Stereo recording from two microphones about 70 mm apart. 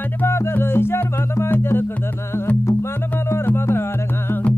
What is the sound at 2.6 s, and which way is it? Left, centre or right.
Music, left.